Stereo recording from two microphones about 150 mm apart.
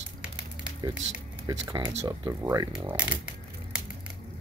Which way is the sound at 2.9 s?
10° right (ahead or behind).